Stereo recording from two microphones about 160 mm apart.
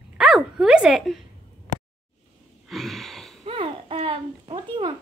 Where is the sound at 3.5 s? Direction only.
35° right (ahead or behind).